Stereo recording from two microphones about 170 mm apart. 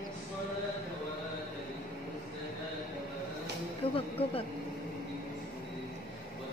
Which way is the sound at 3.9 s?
35° left (ahead or behind).